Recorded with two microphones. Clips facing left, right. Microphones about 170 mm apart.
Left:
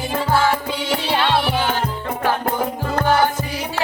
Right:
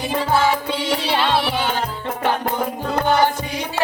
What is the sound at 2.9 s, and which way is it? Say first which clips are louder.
Music: even; 15° right (ahead or behind).